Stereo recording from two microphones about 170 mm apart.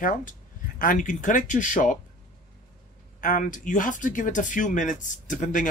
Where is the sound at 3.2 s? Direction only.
50° left (ahead or behind).